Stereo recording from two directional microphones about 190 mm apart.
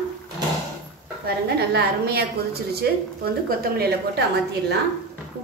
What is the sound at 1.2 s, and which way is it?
A woman's voice, 60° right (ahead or behind).